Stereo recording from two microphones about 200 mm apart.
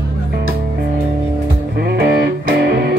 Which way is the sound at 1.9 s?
45° right (ahead or behind).